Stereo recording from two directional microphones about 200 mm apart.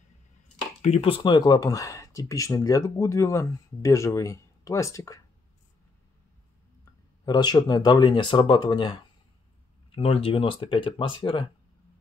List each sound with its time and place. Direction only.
0.8 s speech: 30° left (ahead or behind)
6.8 s speech: 20° left (ahead or behind)